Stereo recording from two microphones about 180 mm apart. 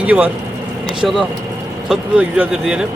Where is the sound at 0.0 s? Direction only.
10° right (ahead or behind).